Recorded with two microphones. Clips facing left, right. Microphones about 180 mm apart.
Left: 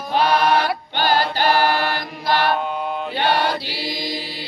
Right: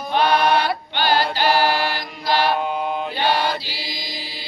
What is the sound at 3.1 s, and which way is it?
Chant, 60° left (ahead or behind).